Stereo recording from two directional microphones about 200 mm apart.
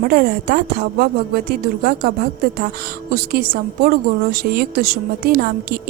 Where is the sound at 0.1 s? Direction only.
45° right (ahead or behind).